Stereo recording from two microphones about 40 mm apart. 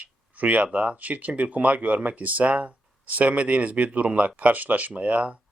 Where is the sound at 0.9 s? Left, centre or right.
Right.